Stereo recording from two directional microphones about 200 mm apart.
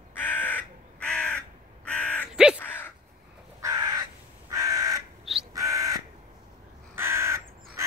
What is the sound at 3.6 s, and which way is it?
Crow, 15° right (ahead or behind).